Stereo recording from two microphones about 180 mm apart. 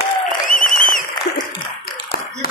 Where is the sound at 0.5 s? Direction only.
45° left (ahead or behind).